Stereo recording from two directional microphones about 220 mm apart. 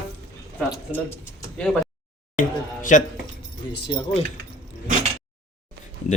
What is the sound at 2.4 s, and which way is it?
Speech, 35° left (ahead or behind).